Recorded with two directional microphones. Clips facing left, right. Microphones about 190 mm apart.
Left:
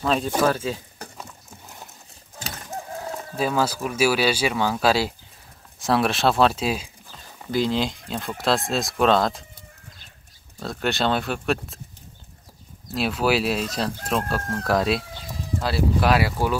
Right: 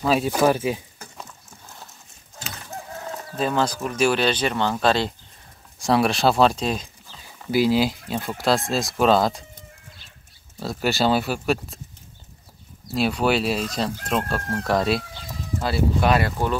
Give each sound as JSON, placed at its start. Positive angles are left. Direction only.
{"t": 0.0, "sound": "speech", "side_deg": -5}
{"t": 3.3, "sound": "speech", "side_deg": 5}
{"t": 7.5, "sound": "speech", "side_deg": -5}
{"t": 10.6, "sound": "speech", "side_deg": -5}
{"t": 12.9, "sound": "speech", "side_deg": 0}